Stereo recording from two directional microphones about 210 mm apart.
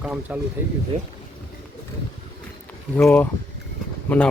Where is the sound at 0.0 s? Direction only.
5° right (ahead or behind).